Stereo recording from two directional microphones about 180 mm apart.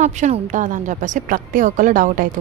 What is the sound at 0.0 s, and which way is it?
A woman's voice, 40° right (ahead or behind).